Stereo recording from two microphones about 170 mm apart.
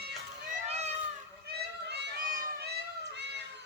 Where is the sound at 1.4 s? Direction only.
80° right.